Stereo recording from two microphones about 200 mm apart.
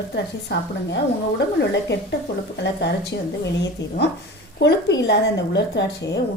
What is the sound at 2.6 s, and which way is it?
A woman's voice, 60° left (ahead or behind).